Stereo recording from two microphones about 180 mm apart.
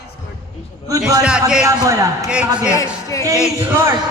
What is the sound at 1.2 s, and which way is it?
Speech, 5° right (ahead or behind).